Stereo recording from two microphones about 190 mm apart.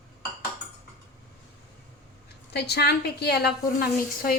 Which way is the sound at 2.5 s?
60° left (ahead or behind).